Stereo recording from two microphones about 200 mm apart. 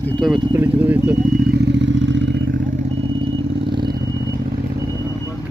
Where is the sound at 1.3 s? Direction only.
50° right (ahead or behind).